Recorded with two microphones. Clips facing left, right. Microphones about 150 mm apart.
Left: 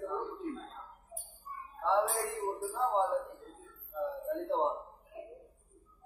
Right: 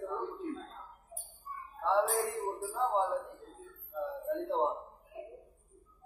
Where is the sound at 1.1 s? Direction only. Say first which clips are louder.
Even; centre (ahead or behind).